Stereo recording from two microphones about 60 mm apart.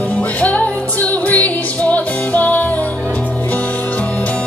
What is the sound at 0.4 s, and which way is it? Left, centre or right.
Music, left.